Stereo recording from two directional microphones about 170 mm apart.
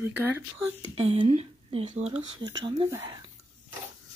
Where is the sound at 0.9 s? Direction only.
35° right (ahead or behind).